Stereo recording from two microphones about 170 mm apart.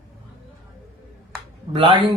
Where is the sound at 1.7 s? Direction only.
30° right (ahead or behind).